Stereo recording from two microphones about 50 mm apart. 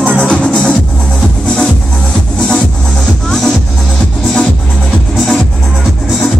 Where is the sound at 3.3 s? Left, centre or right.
Centre.